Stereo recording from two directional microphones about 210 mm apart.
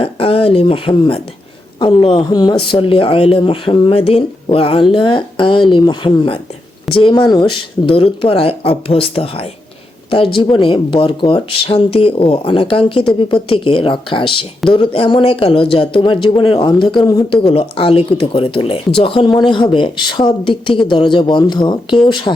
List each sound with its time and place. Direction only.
0.0 s speech: 25° left (ahead or behind)